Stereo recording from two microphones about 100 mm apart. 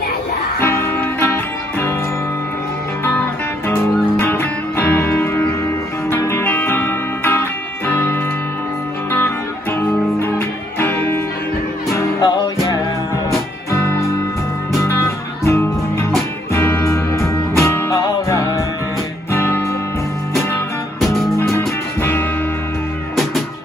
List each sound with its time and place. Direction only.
0.6 s music: 20° left (ahead or behind)
3.6 s music: 25° left (ahead or behind)
12.2 s music: 40° left (ahead or behind)
13.7 s music: 30° left (ahead or behind)
19.3 s music: 20° left (ahead or behind)
21.0 s music: centre (ahead or behind)
21.4 s music: 25° left (ahead or behind)